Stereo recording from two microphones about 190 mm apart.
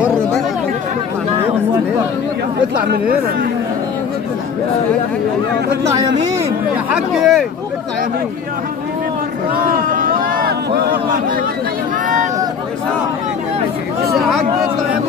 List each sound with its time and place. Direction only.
2.8 s speech: 50° right (ahead or behind)
6.9 s speech: 5° right (ahead or behind)
9.6 s a sound: 45° right (ahead or behind)
14.1 s speech: centre (ahead or behind)